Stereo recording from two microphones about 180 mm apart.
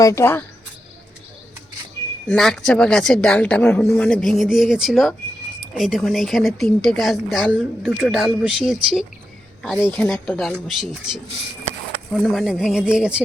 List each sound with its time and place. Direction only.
0.0 s speech: 15° left (ahead or behind)
2.2 s speech: 5° left (ahead or behind)
12.2 s speech: 5° right (ahead or behind)